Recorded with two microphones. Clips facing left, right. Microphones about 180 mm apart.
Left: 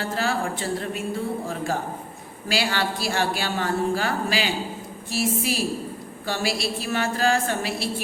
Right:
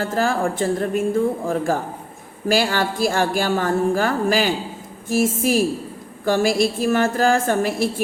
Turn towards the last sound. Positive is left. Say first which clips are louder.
# right 7 dB
turn(degrees=-50)  # may be behind; listen again after turning